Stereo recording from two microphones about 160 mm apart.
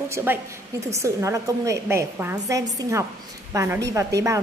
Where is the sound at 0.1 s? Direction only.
15° right (ahead or behind).